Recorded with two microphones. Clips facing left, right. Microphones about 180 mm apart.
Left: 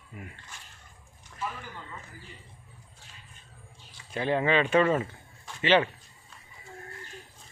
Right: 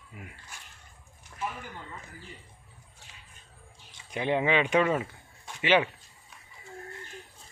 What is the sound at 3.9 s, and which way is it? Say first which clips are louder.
Speech: even; 15° right (ahead or behind).